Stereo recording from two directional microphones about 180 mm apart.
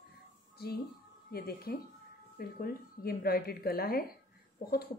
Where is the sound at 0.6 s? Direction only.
60° left (ahead or behind).